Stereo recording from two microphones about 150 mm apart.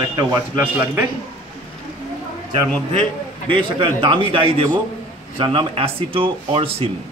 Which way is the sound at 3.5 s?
35° right (ahead or behind).